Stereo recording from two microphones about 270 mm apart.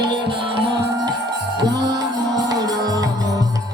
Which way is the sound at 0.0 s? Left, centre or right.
Centre.